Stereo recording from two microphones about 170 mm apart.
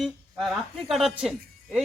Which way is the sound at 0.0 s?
Centre (ahead or behind).